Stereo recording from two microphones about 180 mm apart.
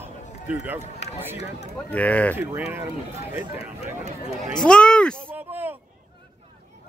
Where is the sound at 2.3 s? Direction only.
15° right (ahead or behind).